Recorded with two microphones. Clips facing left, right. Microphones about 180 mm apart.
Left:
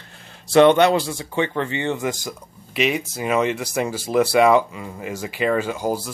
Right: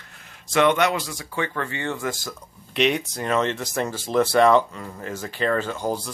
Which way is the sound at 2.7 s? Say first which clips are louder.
Even; 5° left (ahead or behind).